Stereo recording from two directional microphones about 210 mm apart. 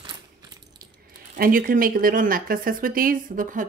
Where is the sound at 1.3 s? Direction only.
40° right (ahead or behind).